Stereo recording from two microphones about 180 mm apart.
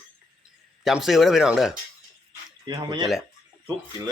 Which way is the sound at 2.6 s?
25° right (ahead or behind).